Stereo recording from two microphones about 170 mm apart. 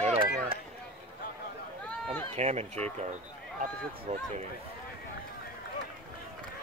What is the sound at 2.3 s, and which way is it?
Speech, 40° right (ahead or behind).